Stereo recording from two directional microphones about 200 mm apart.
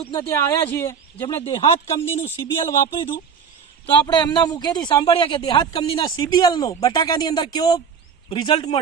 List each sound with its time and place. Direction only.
0.0 s speech: 15° left (ahead or behind)
1.4 s speech: 30° left (ahead or behind)
4.0 s speech: 20° left (ahead or behind)